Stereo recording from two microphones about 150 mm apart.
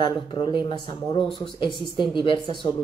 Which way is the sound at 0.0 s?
30° left (ahead or behind).